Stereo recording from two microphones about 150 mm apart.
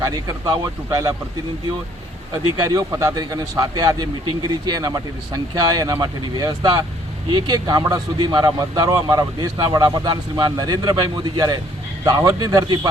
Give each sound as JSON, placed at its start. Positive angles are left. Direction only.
{"t": 0.0, "sound": "speech", "side_deg": -25}
{"t": 2.3, "sound": "speech", "side_deg": -20}